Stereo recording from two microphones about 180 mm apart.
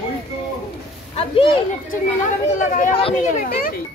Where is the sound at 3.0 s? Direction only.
35° left (ahead or behind).